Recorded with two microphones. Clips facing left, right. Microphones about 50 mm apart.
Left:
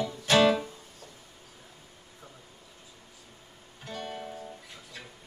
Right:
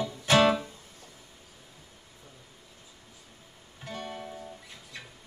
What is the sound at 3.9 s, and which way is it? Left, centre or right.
Music, right.